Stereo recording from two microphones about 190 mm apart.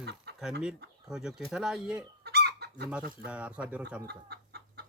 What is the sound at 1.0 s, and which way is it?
Speech, 5° right (ahead or behind).